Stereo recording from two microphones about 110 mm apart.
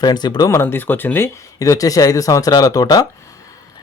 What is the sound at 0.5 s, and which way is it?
Speech, 20° left (ahead or behind).